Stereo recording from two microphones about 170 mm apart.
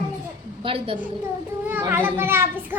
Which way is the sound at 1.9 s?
10° right (ahead or behind).